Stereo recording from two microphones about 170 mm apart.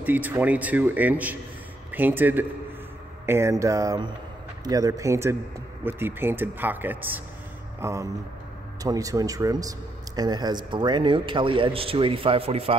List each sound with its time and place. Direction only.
0.0 s speech: 10° right (ahead or behind); by 12.7 s 35° right (ahead or behind)